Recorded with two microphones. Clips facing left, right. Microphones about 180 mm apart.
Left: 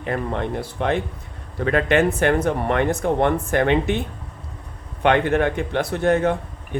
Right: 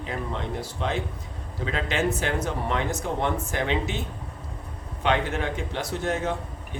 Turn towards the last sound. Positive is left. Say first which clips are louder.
# left 7 dB
turn(degrees=60)  # may be behind; listen again after turning